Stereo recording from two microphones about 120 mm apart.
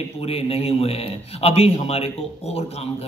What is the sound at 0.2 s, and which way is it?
A man's voice, 55° left (ahead or behind).